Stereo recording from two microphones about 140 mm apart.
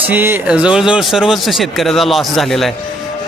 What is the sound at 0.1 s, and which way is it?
Speech, 15° right (ahead or behind).